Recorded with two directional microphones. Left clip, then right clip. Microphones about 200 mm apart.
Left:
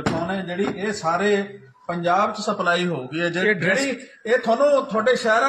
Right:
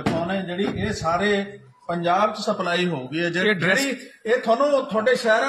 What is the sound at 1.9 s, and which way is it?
A man's voice, 10° right (ahead or behind).